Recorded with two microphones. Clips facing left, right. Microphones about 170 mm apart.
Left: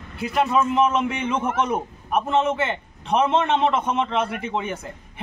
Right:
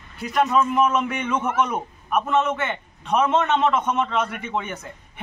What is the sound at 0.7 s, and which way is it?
A man's voice, 30° left (ahead or behind).